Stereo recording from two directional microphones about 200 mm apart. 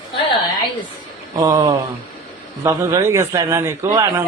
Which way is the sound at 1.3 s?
20° right (ahead or behind).